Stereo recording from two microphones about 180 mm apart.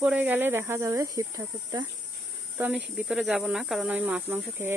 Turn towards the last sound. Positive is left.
turn(degrees=-15)  # may be behind; listen again after turning